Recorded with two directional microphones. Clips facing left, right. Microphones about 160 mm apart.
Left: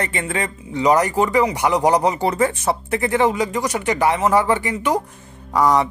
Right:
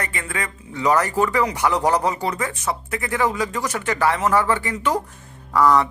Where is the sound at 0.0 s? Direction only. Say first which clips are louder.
Left 5 dB; 25° left (ahead or behind).